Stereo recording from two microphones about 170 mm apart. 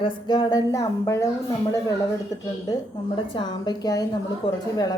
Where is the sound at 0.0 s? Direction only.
25° left (ahead or behind).